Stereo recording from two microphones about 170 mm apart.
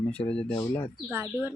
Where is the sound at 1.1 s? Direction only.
15° right (ahead or behind).